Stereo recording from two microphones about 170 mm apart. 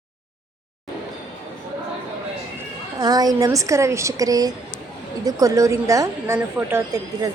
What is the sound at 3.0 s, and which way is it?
A woman's voice, 25° right (ahead or behind).